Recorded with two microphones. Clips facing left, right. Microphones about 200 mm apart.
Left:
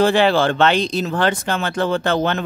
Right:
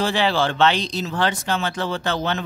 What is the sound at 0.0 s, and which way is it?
Speech, 55° left (ahead or behind).